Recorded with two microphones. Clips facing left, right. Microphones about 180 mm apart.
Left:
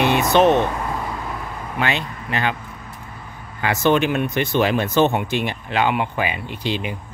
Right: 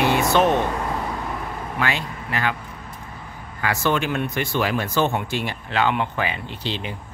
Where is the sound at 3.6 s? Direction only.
20° left (ahead or behind).